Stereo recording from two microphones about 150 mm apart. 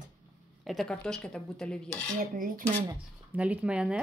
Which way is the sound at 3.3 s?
10° right (ahead or behind).